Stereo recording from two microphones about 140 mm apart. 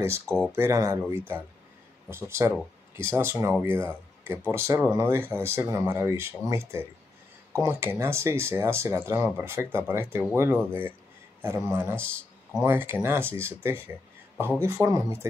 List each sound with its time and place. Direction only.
0.0 s speech: 20° right (ahead or behind)